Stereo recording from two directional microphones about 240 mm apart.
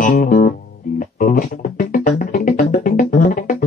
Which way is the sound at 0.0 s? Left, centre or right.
Left.